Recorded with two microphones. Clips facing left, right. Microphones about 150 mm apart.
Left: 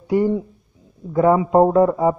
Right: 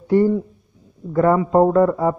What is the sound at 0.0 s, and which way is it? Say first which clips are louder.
A man's voice: right 2 dB; 10° left (ahead or behind).